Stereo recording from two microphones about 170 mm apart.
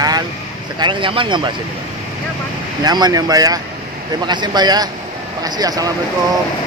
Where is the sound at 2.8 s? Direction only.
25° right (ahead or behind).